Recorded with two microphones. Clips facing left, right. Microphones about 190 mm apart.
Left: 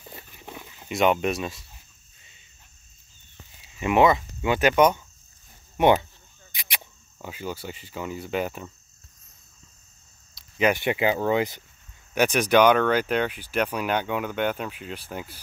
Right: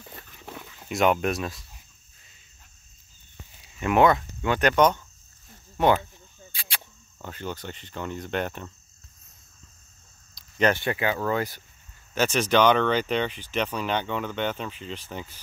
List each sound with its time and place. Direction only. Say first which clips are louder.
0.1 s dog: even; 15° left (ahead or behind)
0.7 s speech: left 1 dB; 5° left (ahead or behind)
3.6 s speech: left 1 dB; 5° left (ahead or behind)
10.4 s cricket: left 1 dB; centre (ahead or behind)
10.7 s speech: left 2 dB; 20° left (ahead or behind)